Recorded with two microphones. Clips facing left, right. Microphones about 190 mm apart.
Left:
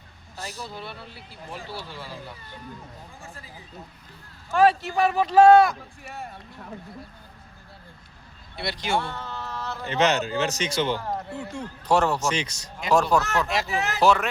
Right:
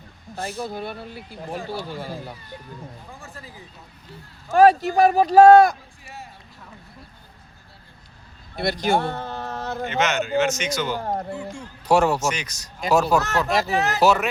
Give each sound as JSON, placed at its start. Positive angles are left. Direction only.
{"t": 0.3, "sound": "speech", "side_deg": -50}
{"t": 4.5, "sound": "a man's voice", "side_deg": -40}
{"t": 6.0, "sound": "a man's voice", "side_deg": 55}
{"t": 8.5, "sound": "speech", "side_deg": -45}
{"t": 9.8, "sound": "a man's voice", "side_deg": 35}
{"t": 11.0, "sound": "speech", "side_deg": -45}
{"t": 11.3, "sound": "a man's voice", "side_deg": 65}
{"t": 11.9, "sound": "speech", "side_deg": -10}
{"t": 12.3, "sound": "speech", "side_deg": 25}
{"t": 12.9, "sound": "speech", "side_deg": -5}
{"t": 13.5, "sound": "a man's voice", "side_deg": -40}
{"t": 14.0, "sound": "speech", "side_deg": -5}